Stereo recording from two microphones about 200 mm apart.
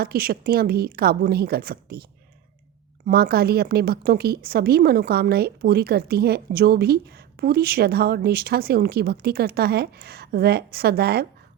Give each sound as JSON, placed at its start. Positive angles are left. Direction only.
{"t": 0.0, "sound": "a woman's voice", "side_deg": -50}
{"t": 3.1, "sound": "a woman's voice", "side_deg": -50}